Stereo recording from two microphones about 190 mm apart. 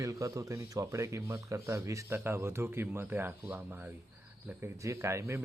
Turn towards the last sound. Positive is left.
turn(degrees=-15)  # may be behind; listen again after turning